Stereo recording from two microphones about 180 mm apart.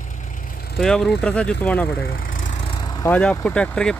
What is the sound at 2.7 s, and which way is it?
Vehicle, 20° left (ahead or behind).